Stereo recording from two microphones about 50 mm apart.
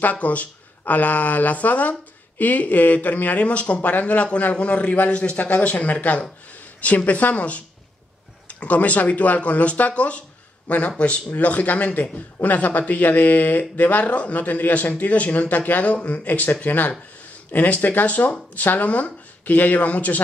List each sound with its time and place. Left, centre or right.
0.0 s a man's voice: left